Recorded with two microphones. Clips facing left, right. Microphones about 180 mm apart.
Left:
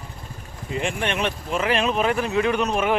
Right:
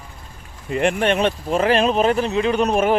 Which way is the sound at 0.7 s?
60° right (ahead or behind).